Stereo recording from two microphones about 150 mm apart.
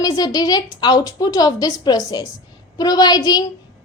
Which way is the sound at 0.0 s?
25° left (ahead or behind).